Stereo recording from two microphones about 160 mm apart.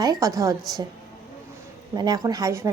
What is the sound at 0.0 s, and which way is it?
Speech, 20° right (ahead or behind).